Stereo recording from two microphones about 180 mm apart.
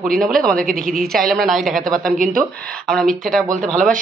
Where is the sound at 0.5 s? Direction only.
50° right (ahead or behind).